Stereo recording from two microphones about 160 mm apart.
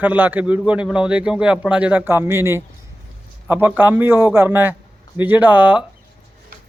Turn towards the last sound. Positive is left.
turn(degrees=-10)  # may be behind; listen again after turning